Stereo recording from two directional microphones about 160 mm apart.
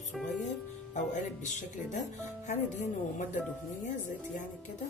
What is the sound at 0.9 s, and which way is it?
Speech, 50° left (ahead or behind).